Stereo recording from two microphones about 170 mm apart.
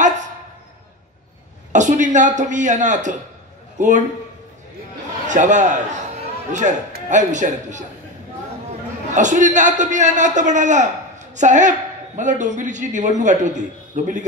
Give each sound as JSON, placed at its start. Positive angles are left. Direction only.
{"t": 1.7, "sound": "a man's voice", "side_deg": -45}
{"t": 5.2, "sound": "a man's voice", "side_deg": -45}
{"t": 9.1, "sound": "a man's voice", "side_deg": -45}